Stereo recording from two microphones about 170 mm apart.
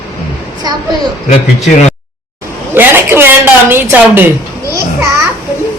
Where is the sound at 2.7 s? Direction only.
10° right (ahead or behind).